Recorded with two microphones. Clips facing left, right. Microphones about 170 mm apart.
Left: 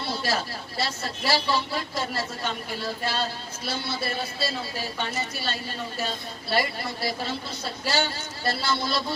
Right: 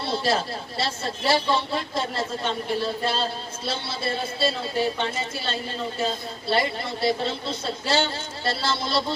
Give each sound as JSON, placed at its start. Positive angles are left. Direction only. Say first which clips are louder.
{"t": 0.1, "sound": "a sound", "louder": "right 5 dB", "side_deg": -25}
{"t": 0.8, "sound": "speech", "louder": "right 2 dB", "side_deg": -25}
{"t": 6.5, "sound": "speech", "louder": "right 2 dB", "side_deg": -25}